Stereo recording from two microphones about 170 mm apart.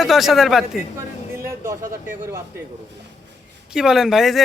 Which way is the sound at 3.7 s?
Centre (ahead or behind).